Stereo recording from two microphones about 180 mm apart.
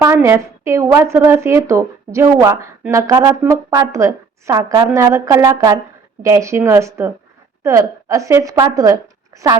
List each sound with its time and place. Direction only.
0.0 s a woman's voice: 15° right (ahead or behind)